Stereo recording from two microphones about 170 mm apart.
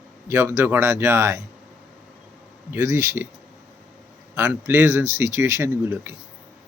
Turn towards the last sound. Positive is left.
turn(degrees=-15)  # may be behind; listen again after turning